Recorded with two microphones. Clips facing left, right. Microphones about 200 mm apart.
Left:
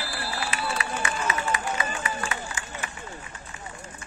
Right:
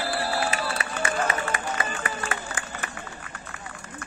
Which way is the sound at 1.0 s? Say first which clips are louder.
Right 5 dB; 55° right (ahead or behind).